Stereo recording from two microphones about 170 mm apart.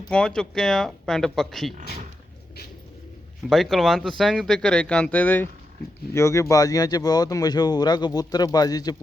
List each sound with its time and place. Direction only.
0.1 s speech: 5° left (ahead or behind)
3.5 s speech: centre (ahead or behind); by 9.0 s 25° left (ahead or behind)